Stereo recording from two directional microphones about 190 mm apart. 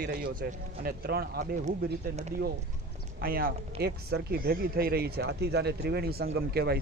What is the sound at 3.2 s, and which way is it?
Speech, 50° right (ahead or behind).